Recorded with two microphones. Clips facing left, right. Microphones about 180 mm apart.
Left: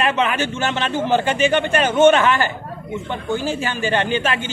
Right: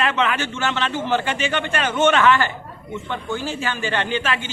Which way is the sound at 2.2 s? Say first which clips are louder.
Right 1 dB; 15° left (ahead or behind).